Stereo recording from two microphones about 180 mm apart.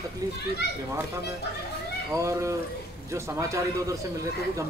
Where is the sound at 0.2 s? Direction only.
20° right (ahead or behind).